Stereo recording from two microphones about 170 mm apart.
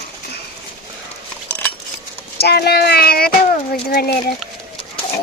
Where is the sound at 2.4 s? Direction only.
70° left (ahead or behind).